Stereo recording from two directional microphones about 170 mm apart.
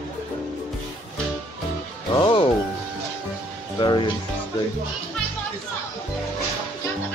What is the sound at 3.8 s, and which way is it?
Speech, 25° left (ahead or behind).